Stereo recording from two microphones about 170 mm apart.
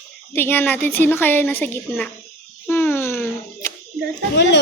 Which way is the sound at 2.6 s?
10° left (ahead or behind).